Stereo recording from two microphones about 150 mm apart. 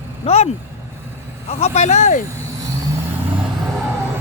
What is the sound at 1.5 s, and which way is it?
Speech, 45° left (ahead or behind).